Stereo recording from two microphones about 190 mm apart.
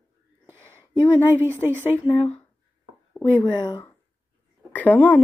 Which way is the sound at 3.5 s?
25° left (ahead or behind).